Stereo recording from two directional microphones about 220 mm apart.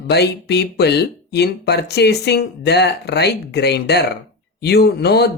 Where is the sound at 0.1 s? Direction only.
50° left (ahead or behind).